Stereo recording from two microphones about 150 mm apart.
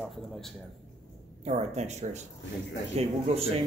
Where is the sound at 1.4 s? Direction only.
45° right (ahead or behind).